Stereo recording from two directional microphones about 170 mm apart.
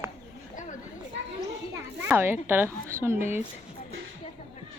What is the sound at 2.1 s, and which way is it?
A woman's voice, 15° right (ahead or behind).